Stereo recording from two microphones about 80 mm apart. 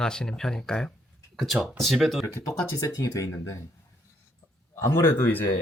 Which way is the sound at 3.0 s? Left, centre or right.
Left.